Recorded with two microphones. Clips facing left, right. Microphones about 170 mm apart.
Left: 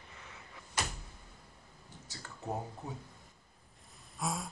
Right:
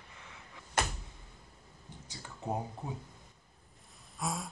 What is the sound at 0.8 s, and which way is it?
Door, 55° right (ahead or behind).